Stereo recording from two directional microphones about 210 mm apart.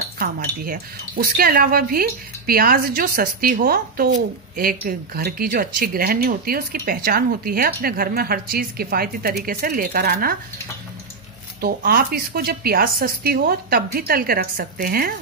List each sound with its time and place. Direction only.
0.2 s speech: 45° right (ahead or behind)
11.6 s speech: 45° right (ahead or behind)